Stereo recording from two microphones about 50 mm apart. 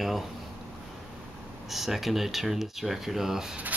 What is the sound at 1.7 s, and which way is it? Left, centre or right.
Speech, centre.